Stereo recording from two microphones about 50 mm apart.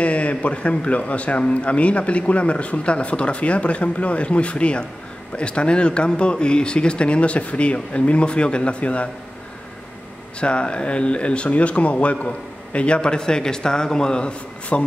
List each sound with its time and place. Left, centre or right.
0.0 s speech: left
10.4 s speech: left